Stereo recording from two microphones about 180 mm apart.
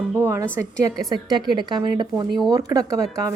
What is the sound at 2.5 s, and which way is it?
Speech, 20° right (ahead or behind).